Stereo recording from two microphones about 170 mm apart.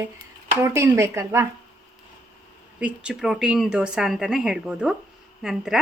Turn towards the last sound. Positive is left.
turn(degrees=0)  # may be behind; listen again after turning